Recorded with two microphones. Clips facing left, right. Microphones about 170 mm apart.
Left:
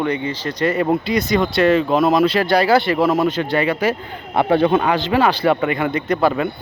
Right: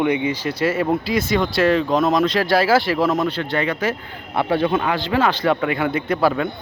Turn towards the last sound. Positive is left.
turn(degrees=0)  # may be behind; listen again after turning